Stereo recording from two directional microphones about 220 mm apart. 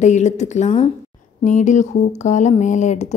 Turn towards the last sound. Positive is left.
turn(degrees=30)  # may be behind; listen again after turning